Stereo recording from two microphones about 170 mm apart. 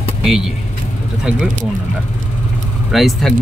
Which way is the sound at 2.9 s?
Centre (ahead or behind).